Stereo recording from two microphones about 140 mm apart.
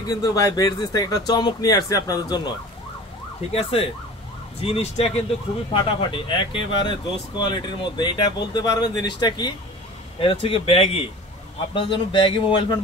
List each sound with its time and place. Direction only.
0.1 s speech: 25° left (ahead or behind)
3.5 s speech: 45° left (ahead or behind)
5.7 s speech: 40° left (ahead or behind)